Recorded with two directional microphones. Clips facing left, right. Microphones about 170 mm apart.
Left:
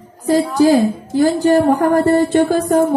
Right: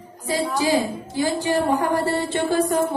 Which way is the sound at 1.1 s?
50° left (ahead or behind).